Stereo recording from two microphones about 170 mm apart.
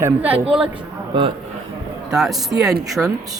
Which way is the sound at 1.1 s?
30° right (ahead or behind).